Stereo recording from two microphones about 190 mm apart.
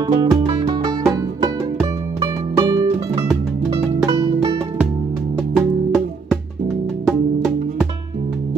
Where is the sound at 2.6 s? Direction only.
20° right (ahead or behind).